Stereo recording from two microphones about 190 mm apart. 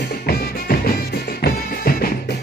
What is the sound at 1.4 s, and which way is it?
Music, 50° left (ahead or behind).